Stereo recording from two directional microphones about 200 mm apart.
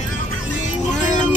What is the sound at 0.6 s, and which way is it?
Music, 40° left (ahead or behind).